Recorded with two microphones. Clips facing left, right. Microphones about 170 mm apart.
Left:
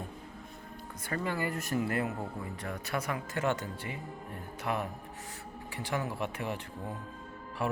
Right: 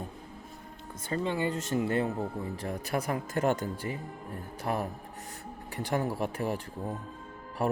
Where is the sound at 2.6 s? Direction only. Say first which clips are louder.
Right 3 dB; 40° right (ahead or behind).